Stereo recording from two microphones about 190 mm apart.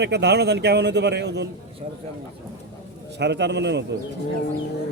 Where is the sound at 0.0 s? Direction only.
60° right (ahead or behind).